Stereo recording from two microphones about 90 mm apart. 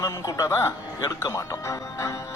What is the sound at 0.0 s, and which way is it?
Speech, 45° left (ahead or behind).